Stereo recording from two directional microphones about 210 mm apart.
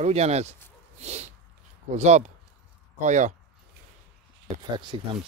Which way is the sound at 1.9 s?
35° right (ahead or behind).